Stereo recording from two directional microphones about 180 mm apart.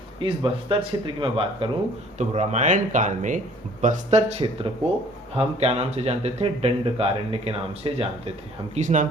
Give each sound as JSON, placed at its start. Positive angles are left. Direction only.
{"t": 0.2, "sound": "speech", "side_deg": -30}
{"t": 2.1, "sound": "speech", "side_deg": -40}
{"t": 8.7, "sound": "speech", "side_deg": -45}